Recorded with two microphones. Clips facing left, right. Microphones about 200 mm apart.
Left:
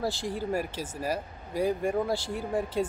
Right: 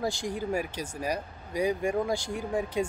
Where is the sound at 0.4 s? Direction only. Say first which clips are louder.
Left 1 dB; 5° left (ahead or behind).